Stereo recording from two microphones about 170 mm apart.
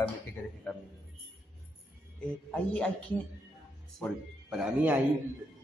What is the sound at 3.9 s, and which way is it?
Speech, centre (ahead or behind).